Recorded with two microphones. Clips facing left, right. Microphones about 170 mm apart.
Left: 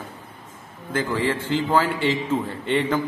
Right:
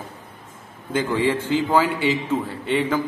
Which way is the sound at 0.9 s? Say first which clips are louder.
Right 2 dB; 15° right (ahead or behind).